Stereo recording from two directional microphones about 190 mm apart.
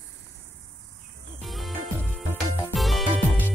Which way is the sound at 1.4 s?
Centre (ahead or behind).